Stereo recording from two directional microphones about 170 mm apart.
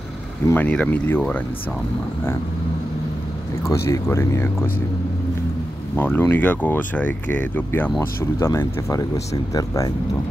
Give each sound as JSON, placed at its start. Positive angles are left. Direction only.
{"t": 0.5, "sound": "speech", "side_deg": 10}
{"t": 3.7, "sound": "speech", "side_deg": 15}
{"t": 5.9, "sound": "speech", "side_deg": 10}